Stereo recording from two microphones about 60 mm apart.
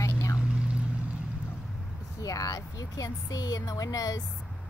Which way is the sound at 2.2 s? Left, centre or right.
Left.